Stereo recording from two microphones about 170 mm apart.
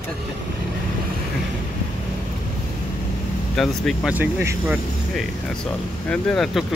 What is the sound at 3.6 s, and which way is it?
Speech, centre (ahead or behind).